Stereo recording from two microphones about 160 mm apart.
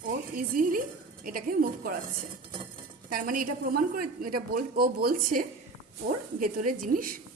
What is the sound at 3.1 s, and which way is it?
A woman's voice, 60° right (ahead or behind).